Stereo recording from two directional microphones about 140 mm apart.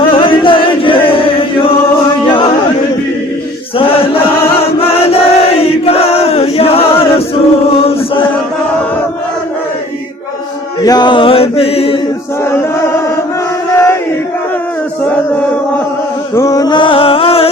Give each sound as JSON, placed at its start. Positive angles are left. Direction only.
{"t": 0.0, "sound": "chant", "side_deg": 40}
{"t": 2.3, "sound": "a sound", "side_deg": 35}
{"t": 3.8, "sound": "chant", "side_deg": 40}
{"t": 10.8, "sound": "chant", "side_deg": 30}
{"t": 13.7, "sound": "battle cry", "side_deg": 20}
{"t": 16.3, "sound": "music", "side_deg": 20}